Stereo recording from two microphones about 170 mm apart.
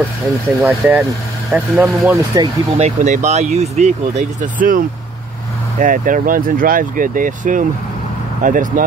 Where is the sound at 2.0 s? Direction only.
20° right (ahead or behind).